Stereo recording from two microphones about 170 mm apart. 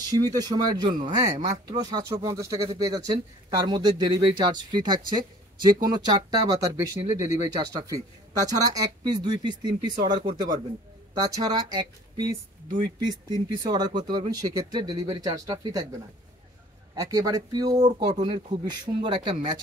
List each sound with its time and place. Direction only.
0.0 s speech: 20° right (ahead or behind)
11.1 s speech: 20° right (ahead or behind)
16.9 s speech: 20° right (ahead or behind)